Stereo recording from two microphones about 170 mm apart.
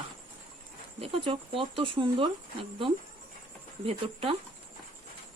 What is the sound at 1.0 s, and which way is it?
A woman's voice, 30° right (ahead or behind).